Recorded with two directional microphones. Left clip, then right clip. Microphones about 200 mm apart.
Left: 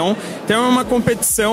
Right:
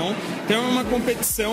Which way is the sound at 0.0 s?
50° left (ahead or behind).